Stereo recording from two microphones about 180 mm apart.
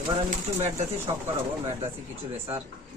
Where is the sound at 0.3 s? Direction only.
35° right (ahead or behind).